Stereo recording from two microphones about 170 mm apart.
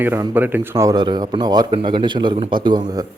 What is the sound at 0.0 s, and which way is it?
Speech, 10° right (ahead or behind).